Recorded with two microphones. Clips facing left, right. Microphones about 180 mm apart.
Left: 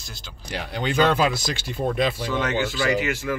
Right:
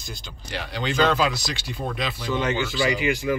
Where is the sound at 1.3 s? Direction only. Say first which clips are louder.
Left 3 dB; 50° left (ahead or behind).